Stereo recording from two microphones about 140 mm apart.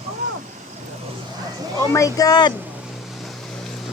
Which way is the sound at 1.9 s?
25° left (ahead or behind).